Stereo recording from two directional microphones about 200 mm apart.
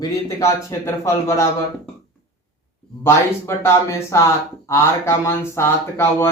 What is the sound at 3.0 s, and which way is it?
Speech, 10° left (ahead or behind).